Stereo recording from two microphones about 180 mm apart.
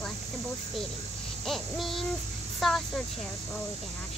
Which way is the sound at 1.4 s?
Centre (ahead or behind).